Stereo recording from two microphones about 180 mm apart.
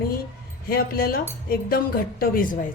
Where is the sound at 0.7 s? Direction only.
55° left (ahead or behind).